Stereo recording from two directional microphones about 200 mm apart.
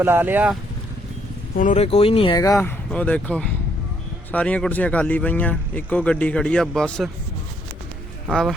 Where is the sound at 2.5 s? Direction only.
5° left (ahead or behind).